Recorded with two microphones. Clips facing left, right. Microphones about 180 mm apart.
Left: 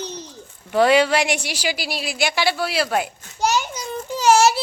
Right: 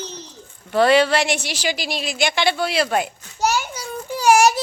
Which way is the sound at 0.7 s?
10° left (ahead or behind).